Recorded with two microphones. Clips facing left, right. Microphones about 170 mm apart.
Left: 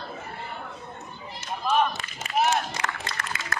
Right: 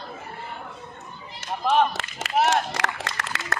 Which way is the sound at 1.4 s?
85° right.